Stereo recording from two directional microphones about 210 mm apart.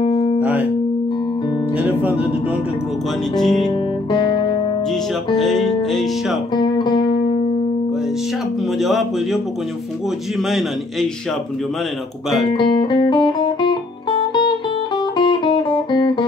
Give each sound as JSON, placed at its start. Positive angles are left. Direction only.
{"t": 0.0, "sound": "music", "side_deg": 25}
{"t": 0.4, "sound": "music", "side_deg": -5}
{"t": 1.8, "sound": "music", "side_deg": -10}
{"t": 3.3, "sound": "speech", "side_deg": 0}
{"t": 3.6, "sound": "guitar", "side_deg": 20}
{"t": 5.3, "sound": "speech", "side_deg": 0}
{"t": 5.8, "sound": "music", "side_deg": 0}
{"t": 6.5, "sound": "music", "side_deg": 20}
{"t": 8.7, "sound": "speech", "side_deg": 0}
{"t": 12.5, "sound": "music", "side_deg": 20}